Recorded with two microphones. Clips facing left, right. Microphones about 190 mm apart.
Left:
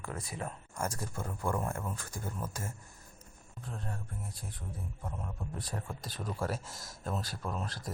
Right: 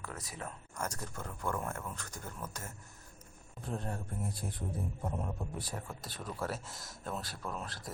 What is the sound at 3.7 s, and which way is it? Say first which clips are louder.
Speech: right 4 dB; 30° right (ahead or behind).